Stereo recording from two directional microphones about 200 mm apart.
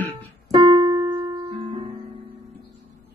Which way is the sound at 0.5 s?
25° right (ahead or behind).